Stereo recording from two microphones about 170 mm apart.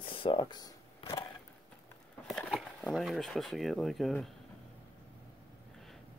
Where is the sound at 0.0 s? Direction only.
30° left (ahead or behind).